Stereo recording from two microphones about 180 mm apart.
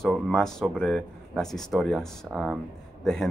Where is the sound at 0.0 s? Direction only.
Centre (ahead or behind).